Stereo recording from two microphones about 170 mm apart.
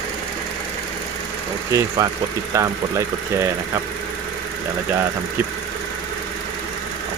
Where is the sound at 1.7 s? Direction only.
20° right (ahead or behind).